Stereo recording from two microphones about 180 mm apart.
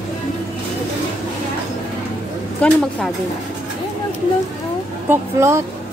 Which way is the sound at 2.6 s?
5° left (ahead or behind).